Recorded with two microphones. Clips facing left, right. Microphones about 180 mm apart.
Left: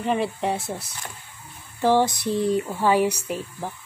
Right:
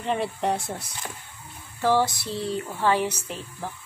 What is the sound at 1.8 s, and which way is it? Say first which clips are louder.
Speech: left 3 dB; 20° left (ahead or behind).